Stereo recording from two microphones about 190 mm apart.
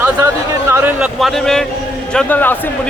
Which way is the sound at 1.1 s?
Centre (ahead or behind).